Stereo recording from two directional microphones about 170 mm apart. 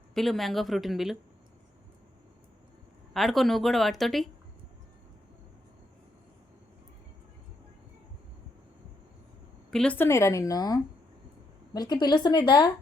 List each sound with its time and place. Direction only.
0.1 s speech: centre (ahead or behind)
3.1 s speech: centre (ahead or behind)
9.7 s a woman's voice: 5° left (ahead or behind); by 12.7 s 25° left (ahead or behind)